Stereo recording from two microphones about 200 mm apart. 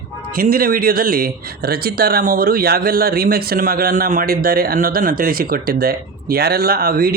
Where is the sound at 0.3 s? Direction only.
45° right (ahead or behind).